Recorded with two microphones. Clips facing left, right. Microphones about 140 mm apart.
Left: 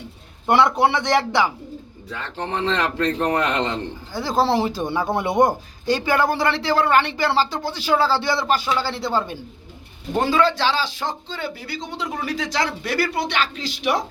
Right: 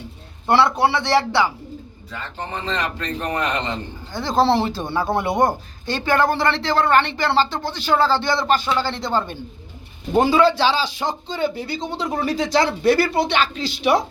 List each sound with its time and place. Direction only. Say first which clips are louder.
0.4 s speech: even; 20° left (ahead or behind)
2.1 s speech: left 3 dB; 75° left (ahead or behind)
4.1 s speech: right 2 dB; 5° left (ahead or behind)
10.2 s a man's voice: right 3 dB; 15° right (ahead or behind); by 14.0 s 30° right (ahead or behind)